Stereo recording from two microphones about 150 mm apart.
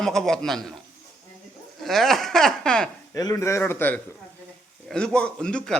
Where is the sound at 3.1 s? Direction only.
20° left (ahead or behind); by 5.8 s 5° left (ahead or behind).